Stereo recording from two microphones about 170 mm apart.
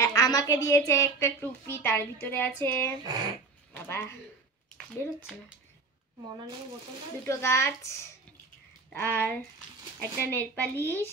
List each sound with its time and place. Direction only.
0.0 s a woman's voice: 20° left (ahead or behind)
7.2 s a woman's voice: 15° left (ahead or behind)
8.9 s a woman's voice: 10° left (ahead or behind)